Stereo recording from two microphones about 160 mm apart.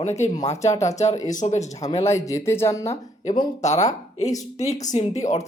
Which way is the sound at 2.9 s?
50° left (ahead or behind).